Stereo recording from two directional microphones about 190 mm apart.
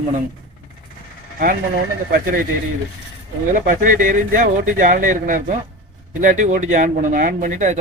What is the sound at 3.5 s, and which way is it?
Speech, 45° right (ahead or behind).